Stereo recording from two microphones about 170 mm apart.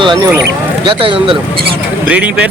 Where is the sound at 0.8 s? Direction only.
30° right (ahead or behind).